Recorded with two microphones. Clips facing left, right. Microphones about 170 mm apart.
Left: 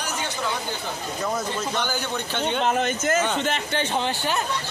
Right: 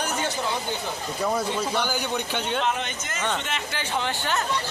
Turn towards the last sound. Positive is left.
turn(degrees=15)  # may be behind; listen again after turning